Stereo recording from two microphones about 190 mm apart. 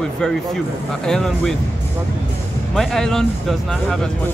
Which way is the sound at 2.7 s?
Centre (ahead or behind).